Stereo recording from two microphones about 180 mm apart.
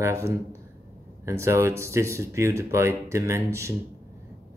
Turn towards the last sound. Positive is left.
turn(degrees=-15)  # may be behind; listen again after turning